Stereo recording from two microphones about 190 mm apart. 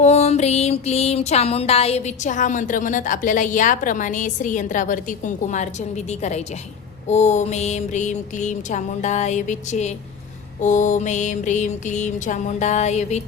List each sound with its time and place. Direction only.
0.0 s music: 35° left (ahead or behind)